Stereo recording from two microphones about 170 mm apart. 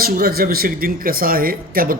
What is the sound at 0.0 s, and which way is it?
Speech, 60° right (ahead or behind).